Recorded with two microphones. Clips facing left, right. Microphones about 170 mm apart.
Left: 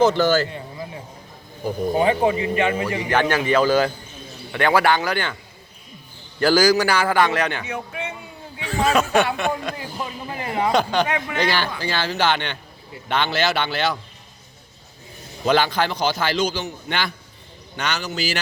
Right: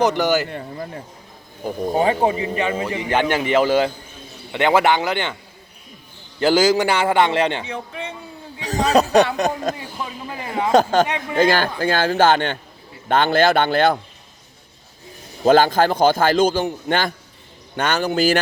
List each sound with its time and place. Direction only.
0.0 s speech: 15° right (ahead or behind)
2.0 s a man's voice: 35° right (ahead or behind); by 5.4 s 20° right (ahead or behind)
6.4 s a man's voice: 20° right (ahead or behind)
8.6 s speech: 40° right (ahead or behind)
15.4 s speech: 45° right (ahead or behind)